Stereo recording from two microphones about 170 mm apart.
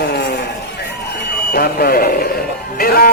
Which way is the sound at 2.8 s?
60° left (ahead or behind).